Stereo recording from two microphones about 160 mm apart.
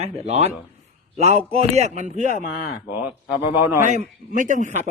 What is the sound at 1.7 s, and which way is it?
Speech, 45° right (ahead or behind).